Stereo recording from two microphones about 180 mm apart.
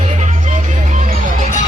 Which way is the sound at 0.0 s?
40° right (ahead or behind).